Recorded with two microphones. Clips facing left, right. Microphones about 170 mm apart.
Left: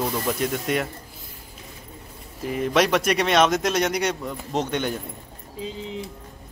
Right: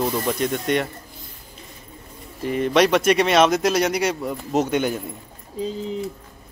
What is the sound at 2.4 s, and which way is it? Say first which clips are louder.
Speech: right 3 dB; centre (ahead or behind).